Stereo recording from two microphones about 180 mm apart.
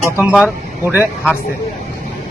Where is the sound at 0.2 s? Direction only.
5° right (ahead or behind).